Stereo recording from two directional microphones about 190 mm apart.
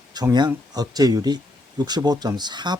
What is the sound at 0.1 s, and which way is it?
Speech, 20° right (ahead or behind).